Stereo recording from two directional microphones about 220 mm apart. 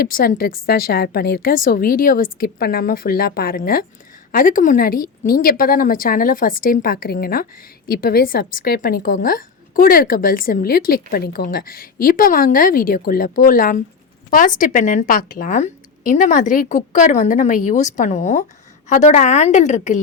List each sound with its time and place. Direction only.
0.0 s a woman's voice: 40° left (ahead or behind)